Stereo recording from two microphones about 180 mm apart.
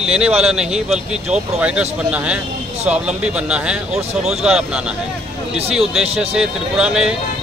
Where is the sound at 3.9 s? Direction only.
35° right (ahead or behind).